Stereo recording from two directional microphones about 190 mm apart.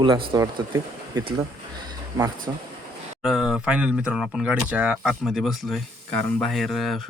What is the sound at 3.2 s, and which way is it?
Speech, 5° right (ahead or behind).